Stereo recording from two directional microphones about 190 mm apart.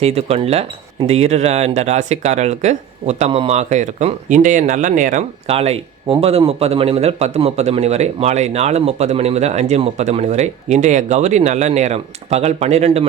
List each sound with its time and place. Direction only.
0.0 s speech: 35° right (ahead or behind)